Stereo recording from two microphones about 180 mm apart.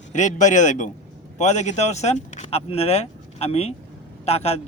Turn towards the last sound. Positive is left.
turn(degrees=35)  # may be behind; listen again after turning